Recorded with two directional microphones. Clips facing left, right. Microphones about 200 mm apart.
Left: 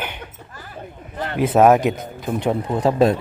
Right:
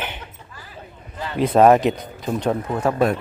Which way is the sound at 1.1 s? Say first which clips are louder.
Left 3 dB; 60° left (ahead or behind).